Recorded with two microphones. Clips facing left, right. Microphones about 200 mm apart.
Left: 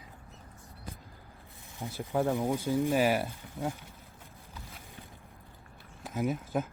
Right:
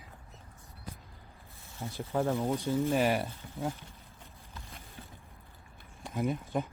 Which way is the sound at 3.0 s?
5° left (ahead or behind).